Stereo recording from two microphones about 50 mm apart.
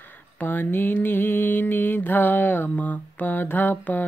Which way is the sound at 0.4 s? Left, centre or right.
Left.